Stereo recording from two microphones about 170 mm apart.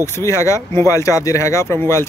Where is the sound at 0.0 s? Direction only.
15° left (ahead or behind).